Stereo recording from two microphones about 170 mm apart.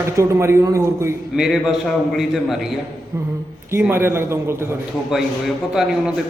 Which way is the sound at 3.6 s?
15° right (ahead or behind).